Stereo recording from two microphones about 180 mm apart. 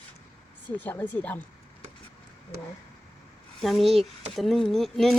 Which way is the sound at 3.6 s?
Centre (ahead or behind).